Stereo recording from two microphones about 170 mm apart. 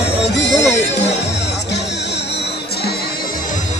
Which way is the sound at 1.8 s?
90° left.